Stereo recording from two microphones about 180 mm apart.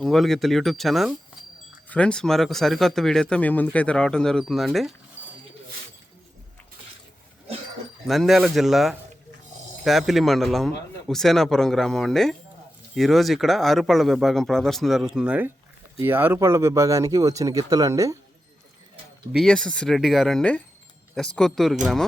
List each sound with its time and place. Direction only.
0.0 s a man's voice: centre (ahead or behind)
5.2 s a sound: 10° right (ahead or behind)
8.0 s a man's voice: centre (ahead or behind); by 18.2 s 20° right (ahead or behind)
19.3 s a man's voice: centre (ahead or behind)